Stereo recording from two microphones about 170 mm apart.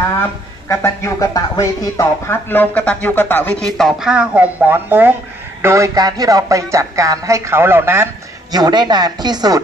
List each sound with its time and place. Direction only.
0.7 s speech: 15° left (ahead or behind); by 5.1 s 10° right (ahead or behind)
5.6 s music: 15° right (ahead or behind)